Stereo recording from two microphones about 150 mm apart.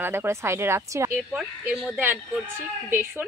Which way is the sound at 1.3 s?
5° right (ahead or behind).